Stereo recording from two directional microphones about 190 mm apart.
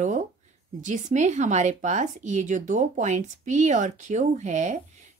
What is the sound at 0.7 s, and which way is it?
Speech, 40° right (ahead or behind).